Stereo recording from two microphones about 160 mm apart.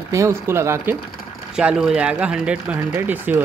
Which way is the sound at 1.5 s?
5° right (ahead or behind).